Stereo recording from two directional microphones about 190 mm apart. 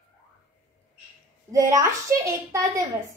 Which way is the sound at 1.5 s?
15° right (ahead or behind).